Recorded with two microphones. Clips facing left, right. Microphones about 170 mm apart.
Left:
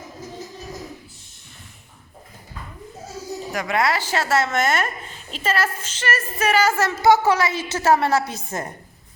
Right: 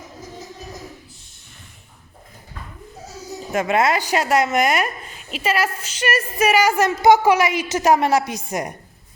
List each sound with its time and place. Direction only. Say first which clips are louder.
3.5 s a woman's voice: right 4 dB; 20° right (ahead or behind)